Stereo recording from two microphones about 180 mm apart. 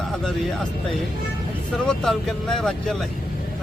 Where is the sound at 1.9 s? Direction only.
Centre (ahead or behind).